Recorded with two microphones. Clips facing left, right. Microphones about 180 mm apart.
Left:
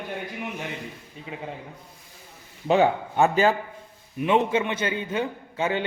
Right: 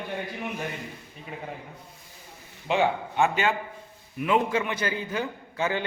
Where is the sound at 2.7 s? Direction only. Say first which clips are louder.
Left 4 dB; 40° left (ahead or behind).